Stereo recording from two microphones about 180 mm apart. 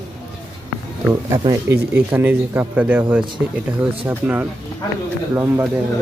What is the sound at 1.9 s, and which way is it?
Speech, 10° right (ahead or behind).